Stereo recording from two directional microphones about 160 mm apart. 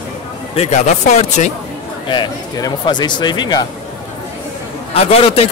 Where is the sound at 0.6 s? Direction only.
45° left (ahead or behind).